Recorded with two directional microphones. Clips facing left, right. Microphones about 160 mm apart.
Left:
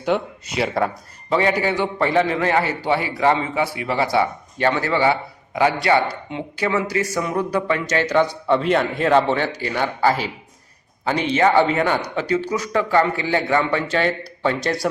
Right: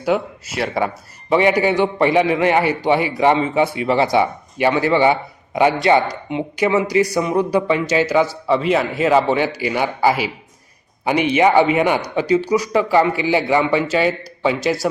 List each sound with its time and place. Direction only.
0.0 s speech: 5° right (ahead or behind)
1.3 s speech: 15° right (ahead or behind)